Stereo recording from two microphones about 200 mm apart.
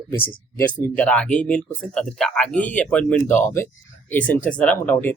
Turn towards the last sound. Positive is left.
turn(degrees=10)  # may be behind; listen again after turning